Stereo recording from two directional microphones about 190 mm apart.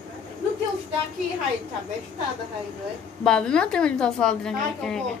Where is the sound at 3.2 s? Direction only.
5° left (ahead or behind).